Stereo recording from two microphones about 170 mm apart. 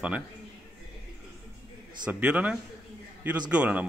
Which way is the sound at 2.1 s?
10° right (ahead or behind).